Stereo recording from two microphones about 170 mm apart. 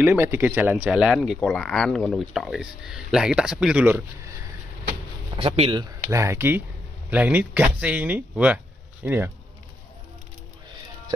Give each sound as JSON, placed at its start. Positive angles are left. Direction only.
{"t": 0.0, "sound": "speech", "side_deg": -10}
{"t": 5.4, "sound": "speech", "side_deg": -30}
{"t": 6.0, "sound": "speech", "side_deg": -15}